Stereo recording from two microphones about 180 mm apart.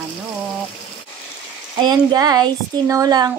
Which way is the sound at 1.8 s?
20° right (ahead or behind).